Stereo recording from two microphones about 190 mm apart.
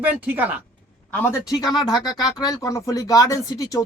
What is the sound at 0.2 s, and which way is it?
Speech, 10° right (ahead or behind).